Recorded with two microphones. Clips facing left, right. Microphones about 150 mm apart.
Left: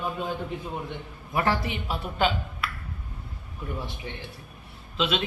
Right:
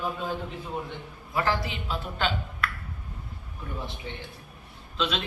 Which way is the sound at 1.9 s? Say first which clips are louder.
Left 4 dB; 10° left (ahead or behind).